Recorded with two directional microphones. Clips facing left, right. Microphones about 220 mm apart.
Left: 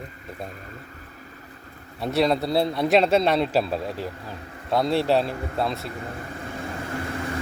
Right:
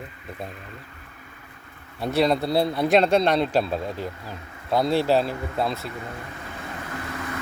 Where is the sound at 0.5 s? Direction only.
40° left (ahead or behind).